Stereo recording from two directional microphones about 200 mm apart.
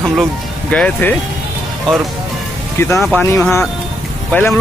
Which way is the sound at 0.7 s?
5° left (ahead or behind).